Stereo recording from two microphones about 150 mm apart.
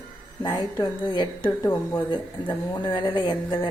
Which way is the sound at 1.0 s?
30° left (ahead or behind).